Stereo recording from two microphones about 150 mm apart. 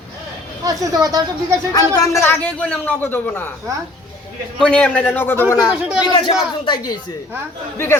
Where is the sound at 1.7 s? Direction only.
20° left (ahead or behind).